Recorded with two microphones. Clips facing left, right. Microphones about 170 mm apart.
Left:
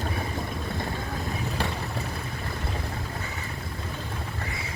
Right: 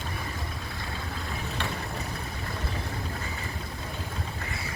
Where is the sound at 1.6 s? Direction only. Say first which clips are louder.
Left 3 dB; 35° left (ahead or behind).